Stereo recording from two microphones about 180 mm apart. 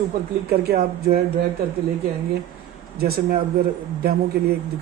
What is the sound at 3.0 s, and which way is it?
Speech, 55° right (ahead or behind).